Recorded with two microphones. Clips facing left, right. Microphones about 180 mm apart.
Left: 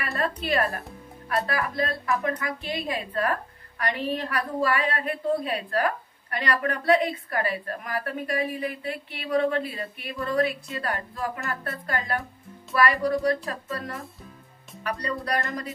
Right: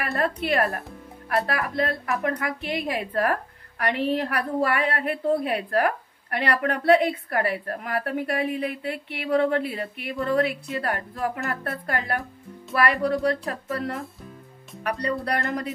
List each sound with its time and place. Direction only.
0.4 s a woman's voice: 60° right (ahead or behind)